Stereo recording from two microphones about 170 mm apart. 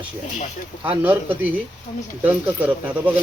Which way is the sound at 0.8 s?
10° right (ahead or behind).